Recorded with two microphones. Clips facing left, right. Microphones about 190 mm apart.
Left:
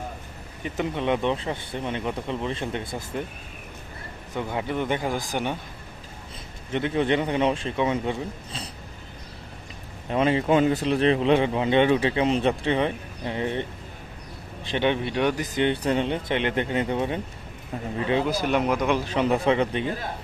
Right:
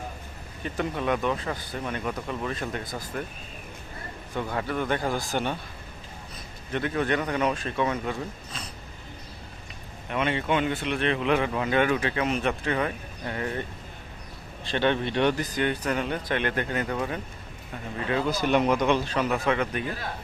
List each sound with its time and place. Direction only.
0.6 s a man's voice: 20° left (ahead or behind)
4.4 s a man's voice: 15° left (ahead or behind)
6.7 s a man's voice: 20° left (ahead or behind)
10.1 s a man's voice: 30° left (ahead or behind); by 15.4 s 10° left (ahead or behind)
15.4 s a man's voice: 25° left (ahead or behind)
18.3 s a man's voice: 5° left (ahead or behind)
19.1 s a man's voice: 25° left (ahead or behind)